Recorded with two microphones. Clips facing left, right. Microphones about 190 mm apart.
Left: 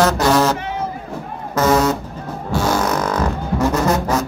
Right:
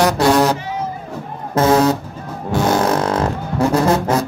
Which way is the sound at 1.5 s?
30° right (ahead or behind).